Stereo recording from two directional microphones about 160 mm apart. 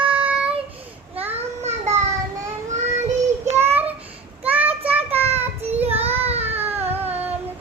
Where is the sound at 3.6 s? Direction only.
15° right (ahead or behind).